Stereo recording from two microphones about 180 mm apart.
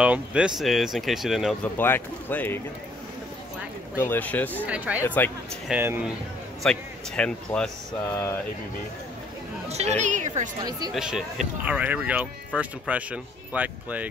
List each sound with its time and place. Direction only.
0.0 s speech: 5° right (ahead or behind); by 2.6 s 10° left (ahead or behind)
4.0 s speech: 10° left (ahead or behind)
4.6 s speech: 10° right (ahead or behind)
5.0 s speech: 10° left (ahead or behind)
5.7 s speech: 10° right (ahead or behind)
6.6 s speech: 5° left (ahead or behind)
9.7 s a woman's voice: 35° right (ahead or behind)
10.6 s speech: 20° right (ahead or behind)
11.0 s speech: centre (ahead or behind)